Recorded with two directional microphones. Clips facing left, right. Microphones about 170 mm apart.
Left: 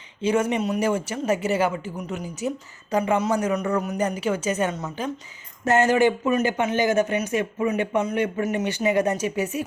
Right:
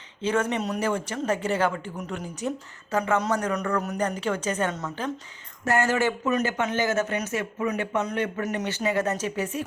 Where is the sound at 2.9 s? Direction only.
15° left (ahead or behind).